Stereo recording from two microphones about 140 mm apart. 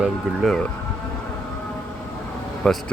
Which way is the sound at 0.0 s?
5° left (ahead or behind).